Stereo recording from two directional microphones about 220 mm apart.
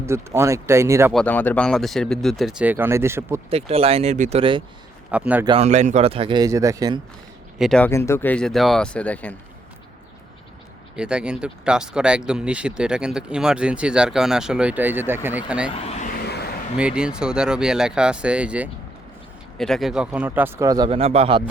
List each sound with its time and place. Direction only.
0.0 s speech: 10° right (ahead or behind)
1.1 s speech: 5° left (ahead or behind); by 3.4 s 10° right (ahead or behind)
3.5 s a man's voice: 25° right (ahead or behind)
5.1 s speech: 5° right (ahead or behind)
5.5 s a man's voice: 30° right (ahead or behind)
7.6 s speech: 5° left (ahead or behind)
10.9 s speech: 5° right (ahead or behind)
15.7 s speech: 30° left (ahead or behind)
16.2 s a sound: 45° left (ahead or behind)
16.7 s speech: 5° right (ahead or behind); by 21.4 s 25° right (ahead or behind)